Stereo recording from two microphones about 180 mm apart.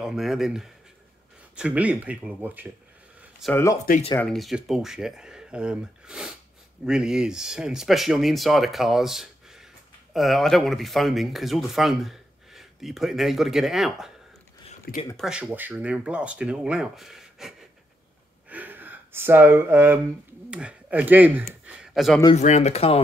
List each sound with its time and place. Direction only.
0.0 s speech: centre (ahead or behind)
3.9 s speech: 55° left (ahead or behind)
4.3 s speech: centre (ahead or behind)
15.1 s speech: 5° right (ahead or behind)
18.5 s gasp: 10° right (ahead or behind)
20.4 s speech: 5° right (ahead or behind)
21.5 s a sound: 5° right (ahead or behind)
22.3 s speech: 40° left (ahead or behind)